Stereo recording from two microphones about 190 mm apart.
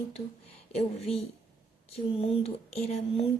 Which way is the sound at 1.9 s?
30° left (ahead or behind).